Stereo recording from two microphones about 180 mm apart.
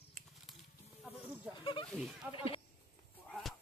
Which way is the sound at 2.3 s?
30° left (ahead or behind).